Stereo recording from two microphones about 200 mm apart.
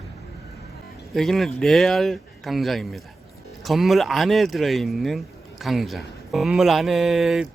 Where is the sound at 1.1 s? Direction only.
Centre (ahead or behind).